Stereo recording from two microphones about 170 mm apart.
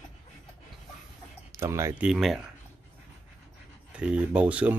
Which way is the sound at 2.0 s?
Centre (ahead or behind).